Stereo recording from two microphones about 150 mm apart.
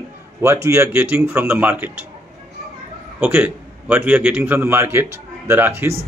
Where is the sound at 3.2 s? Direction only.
10° right (ahead or behind).